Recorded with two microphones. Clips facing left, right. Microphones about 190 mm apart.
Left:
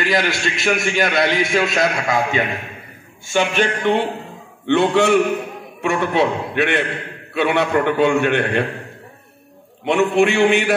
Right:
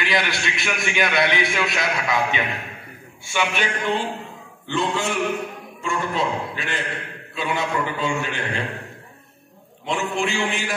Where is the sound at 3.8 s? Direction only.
65° left (ahead or behind).